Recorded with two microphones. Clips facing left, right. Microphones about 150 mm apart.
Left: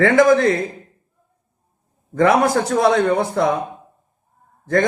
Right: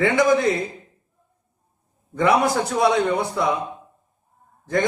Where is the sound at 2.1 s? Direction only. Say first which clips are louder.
Left 4 dB; 45° left (ahead or behind).